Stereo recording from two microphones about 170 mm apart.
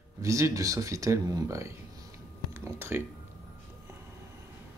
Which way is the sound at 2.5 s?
15° right (ahead or behind).